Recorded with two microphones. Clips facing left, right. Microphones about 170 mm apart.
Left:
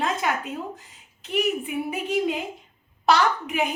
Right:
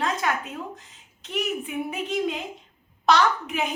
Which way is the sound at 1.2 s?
5° left (ahead or behind).